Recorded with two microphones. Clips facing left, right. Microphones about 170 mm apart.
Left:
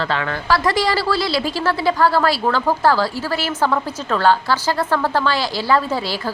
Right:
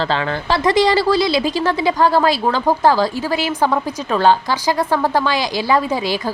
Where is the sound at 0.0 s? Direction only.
30° right (ahead or behind).